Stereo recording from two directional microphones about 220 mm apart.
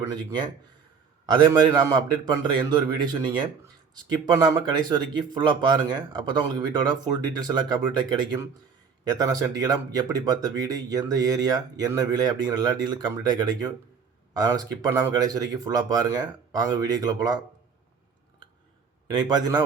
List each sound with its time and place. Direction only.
0.0 s speech: 15° right (ahead or behind)
1.5 s speech: 20° right (ahead or behind)
19.0 s speech: 20° right (ahead or behind)